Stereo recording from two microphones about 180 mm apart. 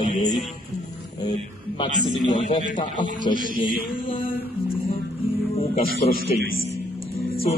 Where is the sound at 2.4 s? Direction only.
40° left (ahead or behind).